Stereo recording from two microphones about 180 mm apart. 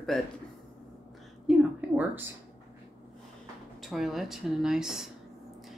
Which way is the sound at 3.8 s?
Centre (ahead or behind).